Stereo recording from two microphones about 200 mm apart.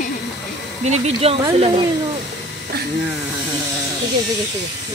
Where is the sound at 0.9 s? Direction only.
30° right (ahead or behind).